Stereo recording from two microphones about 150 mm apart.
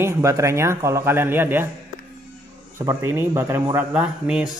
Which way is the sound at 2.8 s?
20° right (ahead or behind).